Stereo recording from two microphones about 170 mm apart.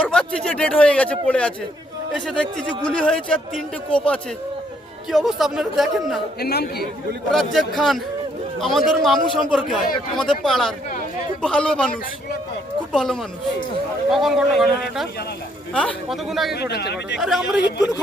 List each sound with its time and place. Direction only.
0.0 s speech: 5° left (ahead or behind)
6.4 s a man's voice: 70° left (ahead or behind)
7.3 s speech: centre (ahead or behind)
12.9 s speech: centre (ahead or behind)
16.6 s a man's voice: 75° left (ahead or behind)
17.2 s speech: centre (ahead or behind)